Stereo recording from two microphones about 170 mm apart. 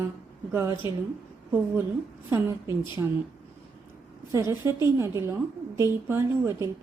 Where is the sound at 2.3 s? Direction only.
15° right (ahead or behind).